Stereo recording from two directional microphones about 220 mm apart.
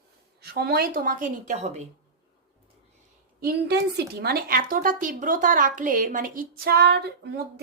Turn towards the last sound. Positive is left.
turn(degrees=-45)  # may be behind; listen again after turning